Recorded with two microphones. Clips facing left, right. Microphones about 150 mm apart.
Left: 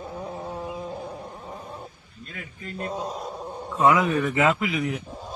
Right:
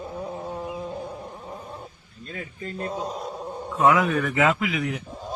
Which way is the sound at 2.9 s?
Centre (ahead or behind).